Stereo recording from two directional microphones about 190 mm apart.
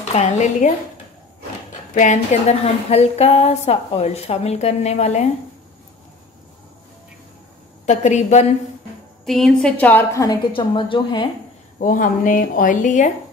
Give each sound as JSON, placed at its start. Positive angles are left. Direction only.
{"t": 0.1, "sound": "a woman's voice", "side_deg": 40}
{"t": 1.7, "sound": "a woman's voice", "side_deg": 40}
{"t": 7.8, "sound": "a woman's voice", "side_deg": 40}
{"t": 9.2, "sound": "a woman's voice", "side_deg": 0}
{"t": 11.8, "sound": "a woman's voice", "side_deg": 45}